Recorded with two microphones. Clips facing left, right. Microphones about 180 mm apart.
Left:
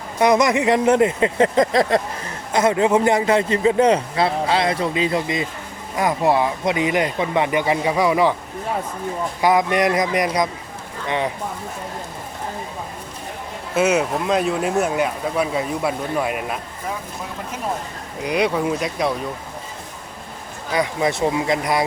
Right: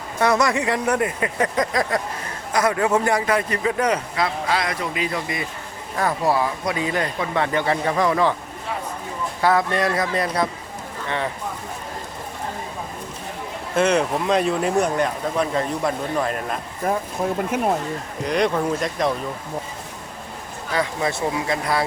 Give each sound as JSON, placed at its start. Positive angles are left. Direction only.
{"t": 0.2, "sound": "a man's voice", "side_deg": 20}
{"t": 9.4, "sound": "speech", "side_deg": 15}
{"t": 13.7, "sound": "speech", "side_deg": 5}
{"t": 16.8, "sound": "speech", "side_deg": -55}
{"t": 18.2, "sound": "speech", "side_deg": 5}
{"t": 20.7, "sound": "a man's voice", "side_deg": 20}